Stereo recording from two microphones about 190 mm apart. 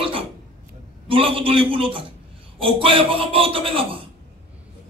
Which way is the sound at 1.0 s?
30° right (ahead or behind).